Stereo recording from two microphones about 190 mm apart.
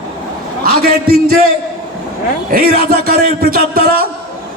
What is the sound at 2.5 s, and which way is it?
A man's voice, 50° right (ahead or behind).